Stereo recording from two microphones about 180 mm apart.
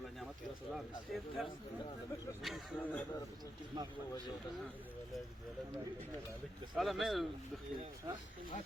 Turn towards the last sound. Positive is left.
turn(degrees=0)  # may be behind; listen again after turning